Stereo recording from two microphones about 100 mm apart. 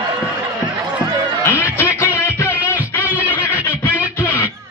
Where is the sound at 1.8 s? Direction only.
25° left (ahead or behind).